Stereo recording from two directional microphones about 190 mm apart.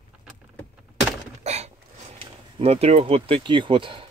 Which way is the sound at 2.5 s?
30° right (ahead or behind).